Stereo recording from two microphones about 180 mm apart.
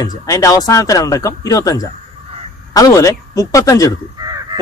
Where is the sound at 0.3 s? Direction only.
20° left (ahead or behind).